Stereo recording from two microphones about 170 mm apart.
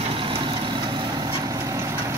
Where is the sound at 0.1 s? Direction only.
30° right (ahead or behind).